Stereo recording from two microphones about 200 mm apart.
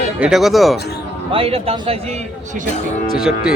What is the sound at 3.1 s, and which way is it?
Speech, centre (ahead or behind).